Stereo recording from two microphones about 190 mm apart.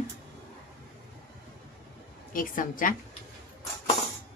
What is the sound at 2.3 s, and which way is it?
Speech, 45° left (ahead or behind).